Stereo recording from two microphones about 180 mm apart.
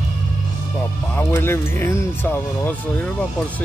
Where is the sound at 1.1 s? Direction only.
10° left (ahead or behind).